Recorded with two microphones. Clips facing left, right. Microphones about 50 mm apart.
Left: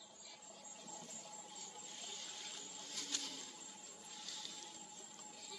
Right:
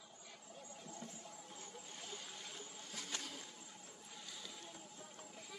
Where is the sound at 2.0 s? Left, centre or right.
Centre.